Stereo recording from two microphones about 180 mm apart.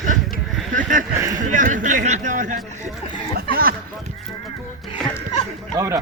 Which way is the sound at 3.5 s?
55° right (ahead or behind).